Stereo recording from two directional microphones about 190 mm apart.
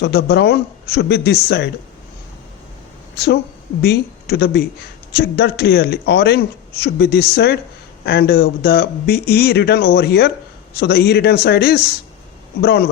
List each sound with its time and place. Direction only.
0.0 s speech: 55° left (ahead or behind)
3.8 s speech: 60° left (ahead or behind)